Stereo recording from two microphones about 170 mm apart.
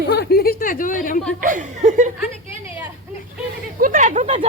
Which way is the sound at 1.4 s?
50° right (ahead or behind).